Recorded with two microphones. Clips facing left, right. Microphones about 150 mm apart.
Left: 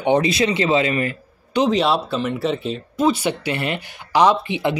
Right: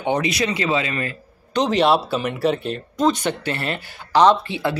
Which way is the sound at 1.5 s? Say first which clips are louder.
Even; 5° left (ahead or behind).